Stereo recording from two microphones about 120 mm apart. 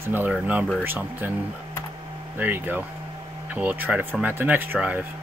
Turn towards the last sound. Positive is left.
turn(degrees=-15)  # may be behind; listen again after turning